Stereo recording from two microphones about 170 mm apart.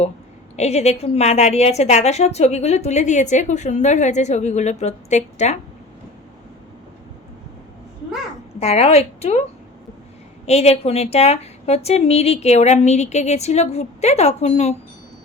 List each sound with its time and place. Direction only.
0.5 s a woman's voice: 40° left (ahead or behind)
8.5 s a woman's voice: 40° left (ahead or behind)
10.4 s a woman's voice: 40° left (ahead or behind)